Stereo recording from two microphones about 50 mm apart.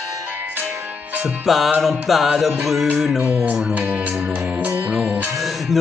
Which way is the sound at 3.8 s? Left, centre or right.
Right.